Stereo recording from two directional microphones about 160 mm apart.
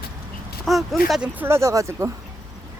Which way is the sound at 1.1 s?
10° right (ahead or behind).